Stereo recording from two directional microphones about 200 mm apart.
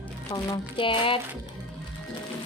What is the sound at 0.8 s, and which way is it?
Speech, 25° left (ahead or behind).